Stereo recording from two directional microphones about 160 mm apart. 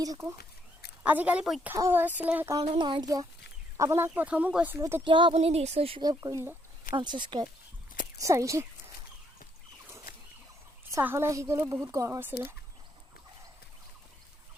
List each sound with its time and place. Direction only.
0.0 s speech: 20° right (ahead or behind)
1.0 s speech: 10° right (ahead or behind)
1.7 s speech: 15° right (ahead or behind)
2.6 s speech: 30° right (ahead or behind); by 5.0 s 15° right (ahead or behind)
5.0 s a woman's voice: 30° right (ahead or behind)
6.0 s speech: 25° right (ahead or behind)
10.9 s speech: 15° right (ahead or behind)